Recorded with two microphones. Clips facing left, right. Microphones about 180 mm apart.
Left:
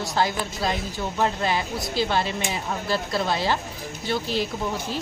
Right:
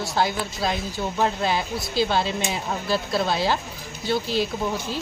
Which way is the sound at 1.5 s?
15° left (ahead or behind).